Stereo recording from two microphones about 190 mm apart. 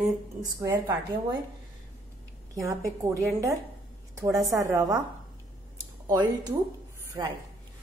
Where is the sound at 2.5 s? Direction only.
15° right (ahead or behind).